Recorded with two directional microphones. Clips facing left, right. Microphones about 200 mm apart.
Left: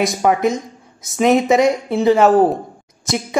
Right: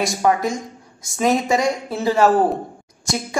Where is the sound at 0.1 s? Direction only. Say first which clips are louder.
Left 3 dB; 20° left (ahead or behind).